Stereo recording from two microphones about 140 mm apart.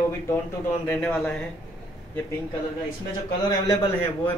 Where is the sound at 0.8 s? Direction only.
15° left (ahead or behind).